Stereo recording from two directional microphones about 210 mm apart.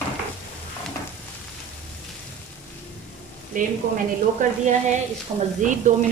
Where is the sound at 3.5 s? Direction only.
40° right (ahead or behind).